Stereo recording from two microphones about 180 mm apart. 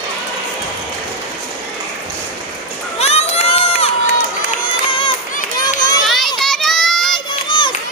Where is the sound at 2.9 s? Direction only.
35° left (ahead or behind).